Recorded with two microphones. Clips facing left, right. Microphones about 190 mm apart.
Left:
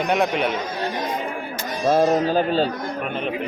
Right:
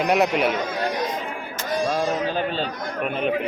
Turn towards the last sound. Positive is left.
turn(degrees=0)  # may be behind; listen again after turning